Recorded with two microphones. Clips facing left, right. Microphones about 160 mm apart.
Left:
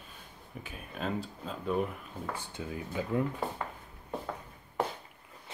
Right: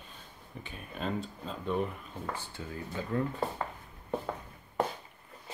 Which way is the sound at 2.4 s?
15° left (ahead or behind).